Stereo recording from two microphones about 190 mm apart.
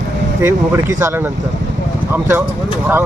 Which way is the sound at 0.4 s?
15° right (ahead or behind).